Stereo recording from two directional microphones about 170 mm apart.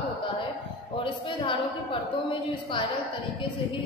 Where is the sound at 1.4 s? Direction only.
30° left (ahead or behind).